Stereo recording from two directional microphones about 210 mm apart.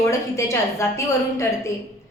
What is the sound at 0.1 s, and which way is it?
A woman's voice, 15° left (ahead or behind).